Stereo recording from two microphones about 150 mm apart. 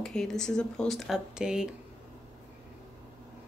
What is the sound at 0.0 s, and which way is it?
Speech, 5° left (ahead or behind).